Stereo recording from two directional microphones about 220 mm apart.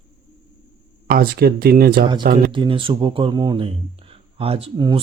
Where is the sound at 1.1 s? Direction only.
45° right (ahead or behind).